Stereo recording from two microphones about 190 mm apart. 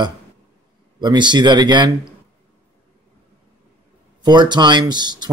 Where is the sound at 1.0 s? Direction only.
25° right (ahead or behind).